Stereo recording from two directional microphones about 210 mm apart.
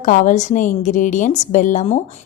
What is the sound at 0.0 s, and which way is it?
A woman's voice, 35° left (ahead or behind).